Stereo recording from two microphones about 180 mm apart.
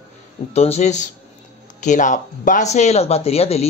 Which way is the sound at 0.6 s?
35° left (ahead or behind).